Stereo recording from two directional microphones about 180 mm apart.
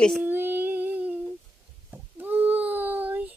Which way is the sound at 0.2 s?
10° right (ahead or behind).